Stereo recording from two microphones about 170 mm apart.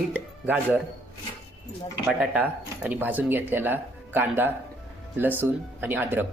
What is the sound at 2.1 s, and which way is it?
Speech, 5° right (ahead or behind).